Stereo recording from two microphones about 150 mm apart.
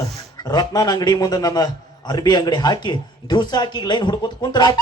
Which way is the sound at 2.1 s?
30° left (ahead or behind).